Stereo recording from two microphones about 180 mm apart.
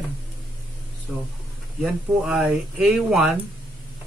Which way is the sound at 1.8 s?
5° right (ahead or behind).